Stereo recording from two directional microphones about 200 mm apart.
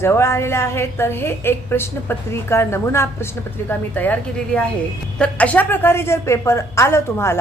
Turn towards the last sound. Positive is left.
turn(degrees=10)  # may be behind; listen again after turning